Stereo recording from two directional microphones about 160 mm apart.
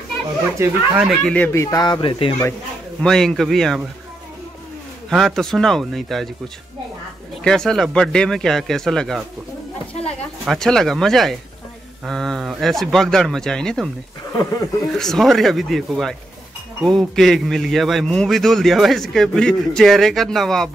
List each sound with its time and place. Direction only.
0.6 s speech: 5° right (ahead or behind)
1.2 s speech: 10° left (ahead or behind); by 2.3 s 35° left (ahead or behind)
3.0 s a man's voice: 5° left (ahead or behind)
5.1 s a man's voice: centre (ahead or behind)
7.4 s a man's voice: 5° left (ahead or behind)
14.9 s a man's voice: centre (ahead or behind)